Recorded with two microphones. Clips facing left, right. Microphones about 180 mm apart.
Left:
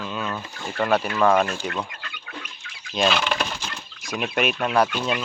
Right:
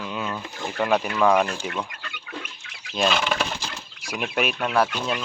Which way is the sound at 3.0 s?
Centre (ahead or behind).